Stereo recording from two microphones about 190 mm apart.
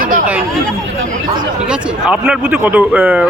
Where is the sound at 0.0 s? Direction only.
45° right (ahead or behind).